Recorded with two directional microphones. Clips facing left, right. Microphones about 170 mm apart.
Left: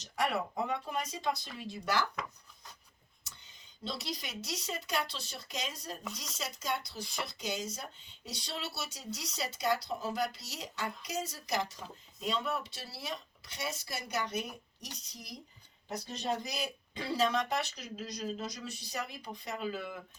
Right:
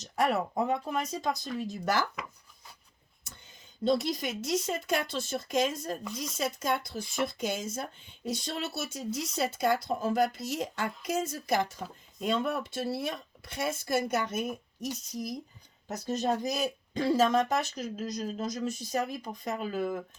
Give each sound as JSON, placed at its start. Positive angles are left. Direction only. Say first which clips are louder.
{"t": 0.0, "sound": "speech", "louder": "right 5 dB", "side_deg": -40}
{"t": 3.2, "sound": "speech", "louder": "right 5 dB", "side_deg": -50}